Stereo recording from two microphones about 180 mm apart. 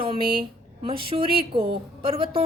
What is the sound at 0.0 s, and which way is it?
A woman's voice, 30° right (ahead or behind).